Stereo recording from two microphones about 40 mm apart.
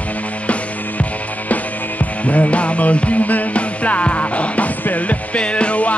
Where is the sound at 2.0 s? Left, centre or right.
Left.